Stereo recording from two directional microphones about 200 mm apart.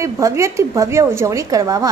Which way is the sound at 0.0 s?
15° right (ahead or behind).